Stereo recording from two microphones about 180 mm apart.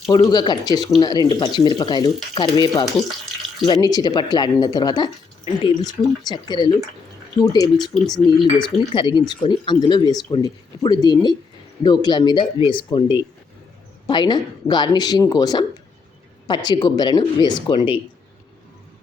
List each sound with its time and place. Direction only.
0.1 s speech: 20° left (ahead or behind)